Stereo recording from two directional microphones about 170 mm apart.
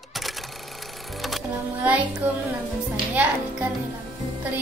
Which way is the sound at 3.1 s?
5° right (ahead or behind).